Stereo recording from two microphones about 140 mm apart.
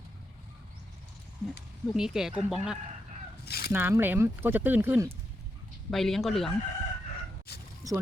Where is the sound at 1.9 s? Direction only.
5° right (ahead or behind).